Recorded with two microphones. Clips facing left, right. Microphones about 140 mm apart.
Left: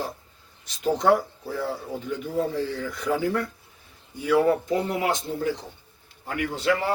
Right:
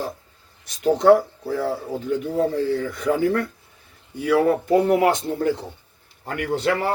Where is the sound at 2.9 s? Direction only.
60° right (ahead or behind).